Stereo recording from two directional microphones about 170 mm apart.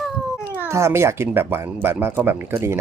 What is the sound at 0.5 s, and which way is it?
Speech, 15° right (ahead or behind).